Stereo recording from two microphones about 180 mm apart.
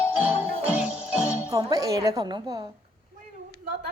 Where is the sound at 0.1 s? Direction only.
10° right (ahead or behind).